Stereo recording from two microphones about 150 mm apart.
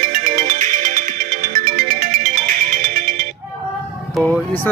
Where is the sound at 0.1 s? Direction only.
60° right (ahead or behind).